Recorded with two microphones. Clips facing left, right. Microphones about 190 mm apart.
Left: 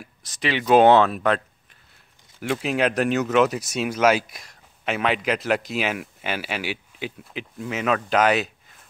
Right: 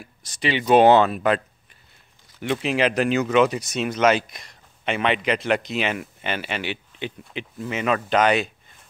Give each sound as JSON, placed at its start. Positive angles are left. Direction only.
{"t": 0.2, "sound": "speech", "side_deg": 0}
{"t": 2.4, "sound": "speech", "side_deg": 0}